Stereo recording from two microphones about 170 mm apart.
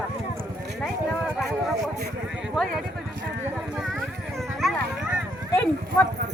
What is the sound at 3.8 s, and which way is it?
Speech, centre (ahead or behind).